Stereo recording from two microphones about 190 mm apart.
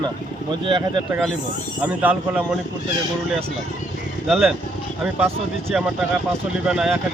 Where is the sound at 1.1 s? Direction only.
5° right (ahead or behind).